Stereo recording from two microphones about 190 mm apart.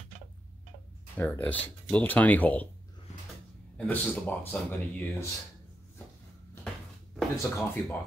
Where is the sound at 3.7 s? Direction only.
10° left (ahead or behind).